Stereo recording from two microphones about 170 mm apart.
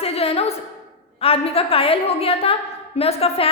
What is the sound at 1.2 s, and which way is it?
A woman's voice, 35° left (ahead or behind).